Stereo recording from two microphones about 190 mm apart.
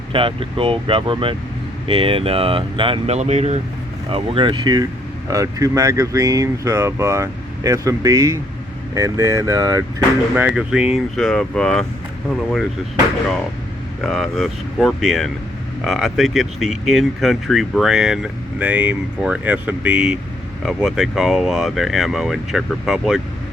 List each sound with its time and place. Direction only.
0.1 s speech: 25° right (ahead or behind)
10.3 s speech: 5° right (ahead or behind)
14.0 s speech: centre (ahead or behind)